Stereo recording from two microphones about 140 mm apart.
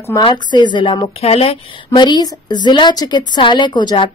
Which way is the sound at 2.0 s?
30° left (ahead or behind).